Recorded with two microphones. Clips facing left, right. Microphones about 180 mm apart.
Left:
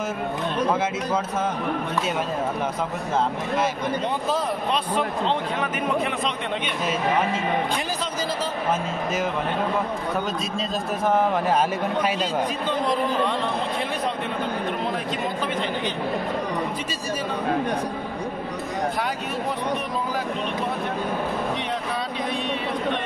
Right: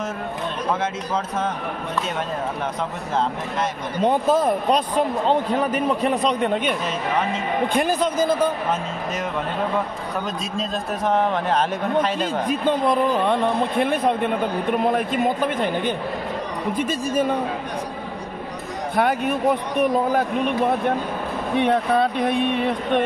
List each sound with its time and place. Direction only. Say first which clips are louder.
4.0 s speech: right 11 dB; 50° right (ahead or behind)
7.7 s speech: right 7 dB; 55° right (ahead or behind)
11.1 s a man's voice: even; 5° left (ahead or behind)
12.2 s speech: right 2 dB; 50° right (ahead or behind)
19.8 s speech: right 8 dB; 55° right (ahead or behind)
21.5 s speech: right 9 dB; 55° right (ahead or behind)